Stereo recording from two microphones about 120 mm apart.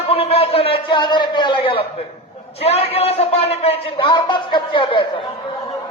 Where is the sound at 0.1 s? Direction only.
55° left (ahead or behind).